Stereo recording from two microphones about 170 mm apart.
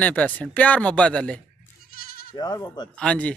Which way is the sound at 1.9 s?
60° left (ahead or behind).